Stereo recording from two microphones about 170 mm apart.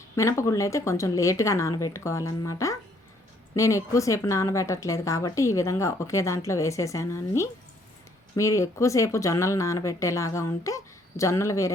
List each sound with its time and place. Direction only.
0.2 s a woman's voice: 15° left (ahead or behind)